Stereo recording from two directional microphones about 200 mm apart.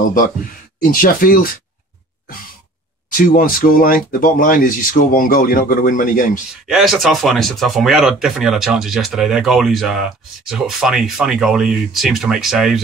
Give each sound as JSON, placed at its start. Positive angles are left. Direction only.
{"t": 0.7, "sound": "speech", "side_deg": 45}
{"t": 3.2, "sound": "speech", "side_deg": 45}
{"t": 6.7, "sound": "speech", "side_deg": 0}